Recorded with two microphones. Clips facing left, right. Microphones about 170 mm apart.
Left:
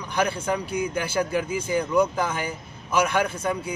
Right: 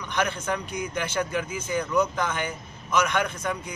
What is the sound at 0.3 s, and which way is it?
Speech, 10° left (ahead or behind).